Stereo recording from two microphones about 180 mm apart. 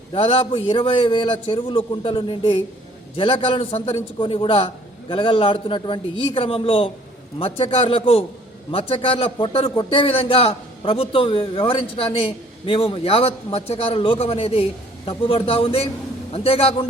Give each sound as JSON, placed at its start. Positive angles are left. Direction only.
{"t": 0.1, "sound": "a man's voice", "side_deg": 30}